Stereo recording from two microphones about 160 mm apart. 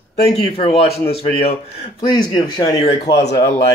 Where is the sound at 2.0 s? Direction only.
25° left (ahead or behind).